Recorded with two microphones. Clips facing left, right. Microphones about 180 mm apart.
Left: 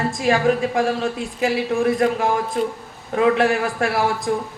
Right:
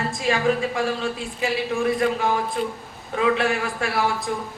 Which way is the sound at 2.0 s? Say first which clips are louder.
Left 3 dB; 45° left (ahead or behind).